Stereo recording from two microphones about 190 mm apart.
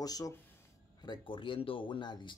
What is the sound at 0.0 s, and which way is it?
Speech, 20° left (ahead or behind).